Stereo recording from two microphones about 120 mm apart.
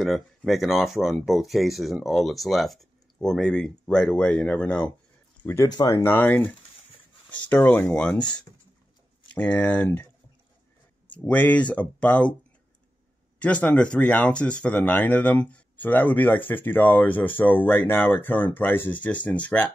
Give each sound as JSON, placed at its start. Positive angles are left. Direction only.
{"t": 0.0, "sound": "speech", "side_deg": 0}
{"t": 6.1, "sound": "speech", "side_deg": 15}
{"t": 9.3, "sound": "speech", "side_deg": 15}
{"t": 11.2, "sound": "speech", "side_deg": 10}
{"t": 13.4, "sound": "speech", "side_deg": 10}